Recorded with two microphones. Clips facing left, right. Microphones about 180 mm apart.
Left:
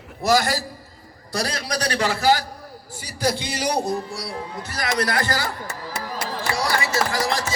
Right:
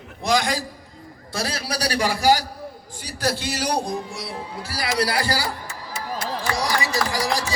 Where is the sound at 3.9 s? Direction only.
20° right (ahead or behind).